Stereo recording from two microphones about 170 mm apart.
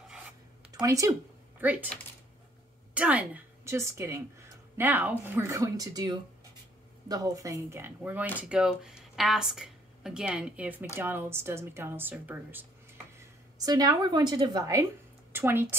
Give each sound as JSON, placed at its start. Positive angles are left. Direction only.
{"t": 0.7, "sound": "speech", "side_deg": -20}
{"t": 2.9, "sound": "a woman's voice", "side_deg": -10}